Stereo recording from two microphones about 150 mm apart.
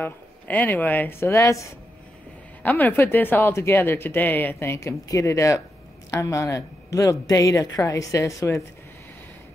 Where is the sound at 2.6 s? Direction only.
15° left (ahead or behind).